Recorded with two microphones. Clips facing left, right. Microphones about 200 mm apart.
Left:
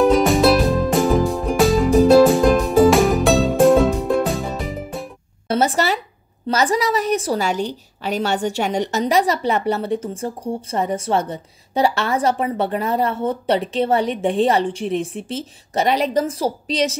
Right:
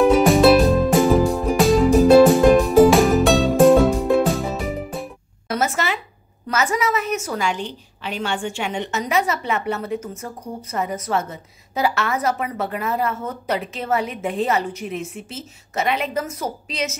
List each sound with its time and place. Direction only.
0.0 s music: centre (ahead or behind)
5.5 s a woman's voice: 30° left (ahead or behind)